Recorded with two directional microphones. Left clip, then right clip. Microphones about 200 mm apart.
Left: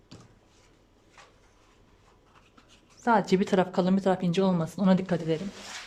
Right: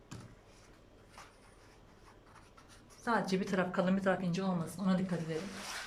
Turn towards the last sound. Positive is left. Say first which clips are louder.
# left 10 dB
turn(degrees=50)  # may be behind; listen again after turning